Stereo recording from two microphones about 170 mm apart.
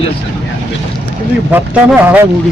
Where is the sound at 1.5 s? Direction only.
10° right (ahead or behind).